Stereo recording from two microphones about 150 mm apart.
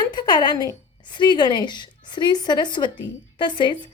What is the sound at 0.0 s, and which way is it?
A woman's voice, 30° left (ahead or behind).